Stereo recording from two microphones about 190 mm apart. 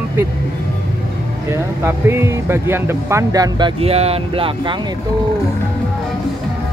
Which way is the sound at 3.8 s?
30° right (ahead or behind).